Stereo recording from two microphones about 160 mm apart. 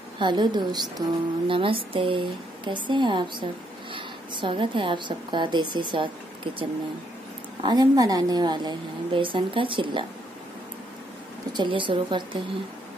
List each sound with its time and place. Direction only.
0.2 s a woman's voice: 30° right (ahead or behind)
11.5 s speech: 30° right (ahead or behind)